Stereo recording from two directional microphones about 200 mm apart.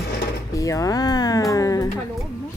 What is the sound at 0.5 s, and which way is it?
Speech, 15° left (ahead or behind).